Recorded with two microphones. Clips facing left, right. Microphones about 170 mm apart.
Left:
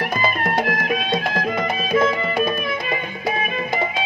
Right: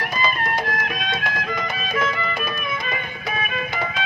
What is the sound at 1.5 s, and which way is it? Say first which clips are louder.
Music: left 8 dB; 30° left (ahead or behind).